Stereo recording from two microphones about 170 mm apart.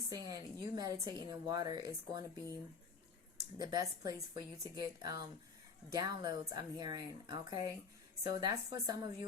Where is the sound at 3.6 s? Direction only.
20° right (ahead or behind).